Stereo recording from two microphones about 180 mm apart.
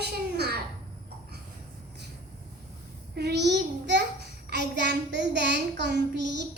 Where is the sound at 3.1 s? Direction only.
65° right (ahead or behind).